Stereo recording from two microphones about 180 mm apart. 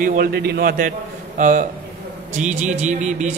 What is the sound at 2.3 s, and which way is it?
Music, 40° right (ahead or behind).